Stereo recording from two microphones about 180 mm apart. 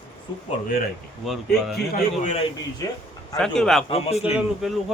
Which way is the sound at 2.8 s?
20° left (ahead or behind).